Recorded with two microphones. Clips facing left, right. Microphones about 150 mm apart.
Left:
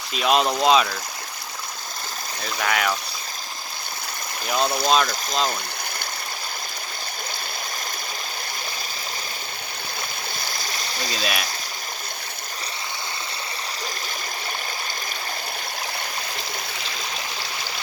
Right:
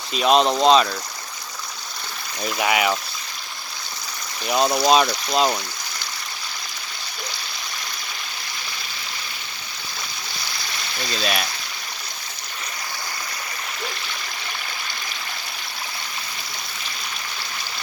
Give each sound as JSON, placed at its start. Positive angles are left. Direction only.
{"t": 0.1, "sound": "speech", "side_deg": 5}
{"t": 2.6, "sound": "speech", "side_deg": -10}
{"t": 4.4, "sound": "speech", "side_deg": -5}
{"t": 10.4, "sound": "stream", "side_deg": 40}
{"t": 11.1, "sound": "speech", "side_deg": 5}